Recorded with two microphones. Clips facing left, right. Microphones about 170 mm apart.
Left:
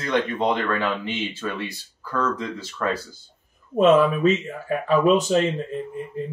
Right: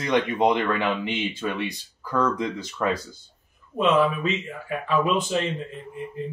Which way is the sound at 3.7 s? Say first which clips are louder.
Left 4 dB; 45° left (ahead or behind).